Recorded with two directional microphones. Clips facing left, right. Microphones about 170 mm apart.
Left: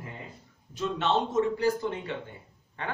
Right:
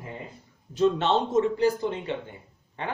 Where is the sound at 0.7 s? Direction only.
30° right (ahead or behind).